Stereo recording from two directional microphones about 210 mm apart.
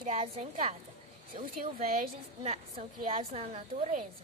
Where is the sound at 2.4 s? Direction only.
30° right (ahead or behind).